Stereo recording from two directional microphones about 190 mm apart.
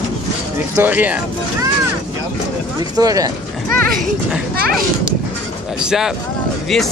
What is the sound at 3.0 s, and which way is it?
Speech, 20° right (ahead or behind).